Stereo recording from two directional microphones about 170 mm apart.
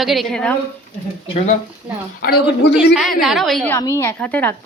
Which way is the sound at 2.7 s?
Centre (ahead or behind).